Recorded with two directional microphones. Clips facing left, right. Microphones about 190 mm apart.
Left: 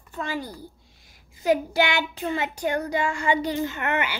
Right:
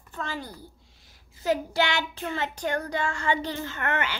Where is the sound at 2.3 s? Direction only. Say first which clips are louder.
Left 2 dB; 10° left (ahead or behind).